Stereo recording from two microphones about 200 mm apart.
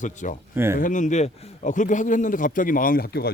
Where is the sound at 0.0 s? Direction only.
40° left (ahead or behind).